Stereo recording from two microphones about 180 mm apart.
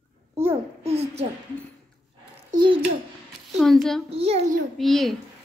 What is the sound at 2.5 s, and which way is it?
Babbling, 25° right (ahead or behind).